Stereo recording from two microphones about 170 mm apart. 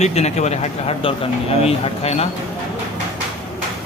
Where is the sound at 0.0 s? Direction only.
40° left (ahead or behind).